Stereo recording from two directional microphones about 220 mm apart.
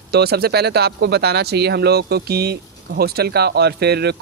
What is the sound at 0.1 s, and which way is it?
Speech, 45° right (ahead or behind).